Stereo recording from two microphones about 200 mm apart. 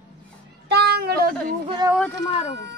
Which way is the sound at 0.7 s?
55° right (ahead or behind).